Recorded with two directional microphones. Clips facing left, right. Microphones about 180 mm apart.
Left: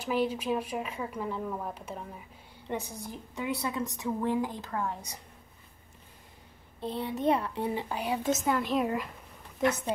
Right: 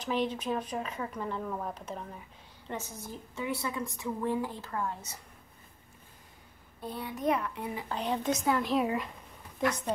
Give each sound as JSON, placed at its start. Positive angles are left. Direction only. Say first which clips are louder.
{"t": 0.0, "sound": "a woman's voice", "louder": "left 2 dB", "side_deg": 10}
{"t": 6.8, "sound": "a child's voice", "louder": "left 4 dB", "side_deg": 25}
{"t": 7.9, "sound": "speech", "louder": "right 3 dB", "side_deg": 10}